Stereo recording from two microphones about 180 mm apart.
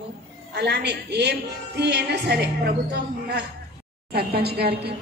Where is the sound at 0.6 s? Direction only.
70° right (ahead or behind).